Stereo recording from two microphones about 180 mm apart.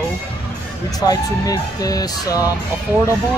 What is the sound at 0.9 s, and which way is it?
Speech, 20° left (ahead or behind).